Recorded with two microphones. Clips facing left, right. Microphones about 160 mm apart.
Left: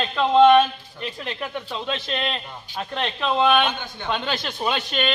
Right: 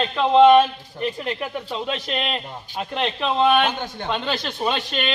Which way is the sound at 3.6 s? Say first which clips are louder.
Right 3 dB; 40° right (ahead or behind).